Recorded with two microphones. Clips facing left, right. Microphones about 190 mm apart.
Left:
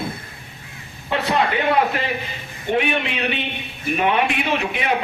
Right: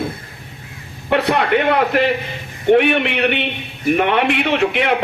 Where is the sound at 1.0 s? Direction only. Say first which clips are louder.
Right 4 dB; 65° right (ahead or behind).